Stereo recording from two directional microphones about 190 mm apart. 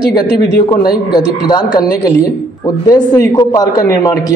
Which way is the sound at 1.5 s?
20° left (ahead or behind).